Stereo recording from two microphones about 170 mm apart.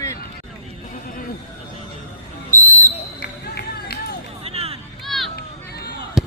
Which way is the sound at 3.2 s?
65° left (ahead or behind).